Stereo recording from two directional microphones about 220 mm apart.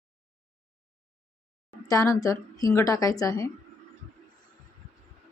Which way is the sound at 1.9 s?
15° left (ahead or behind).